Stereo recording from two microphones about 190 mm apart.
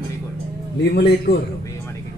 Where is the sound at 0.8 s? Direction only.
55° left (ahead or behind).